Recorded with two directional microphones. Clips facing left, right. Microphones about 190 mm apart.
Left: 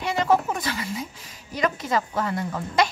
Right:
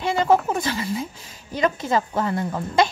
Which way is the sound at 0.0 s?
30° right (ahead or behind).